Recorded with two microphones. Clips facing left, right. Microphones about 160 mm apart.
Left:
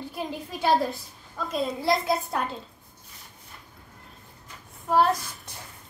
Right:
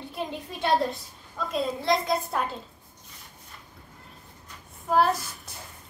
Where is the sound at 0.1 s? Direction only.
5° left (ahead or behind).